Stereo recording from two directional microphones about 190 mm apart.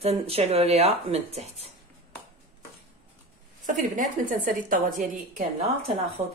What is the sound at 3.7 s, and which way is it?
A woman's voice, 45° right (ahead or behind).